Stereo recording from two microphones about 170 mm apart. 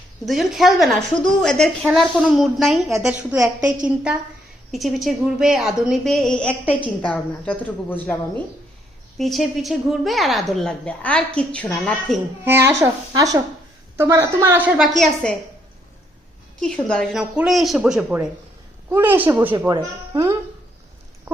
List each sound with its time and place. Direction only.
0.3 s a woman's voice: centre (ahead or behind)
3.3 s a woman's voice: 20° right (ahead or behind)
3.8 s a woman's voice: 5° right (ahead or behind)
12.5 s a woman's voice: 15° right (ahead or behind); by 15.4 s 5° left (ahead or behind)
16.6 s a woman's voice: 5° left (ahead or behind); by 19.7 s 15° right (ahead or behind)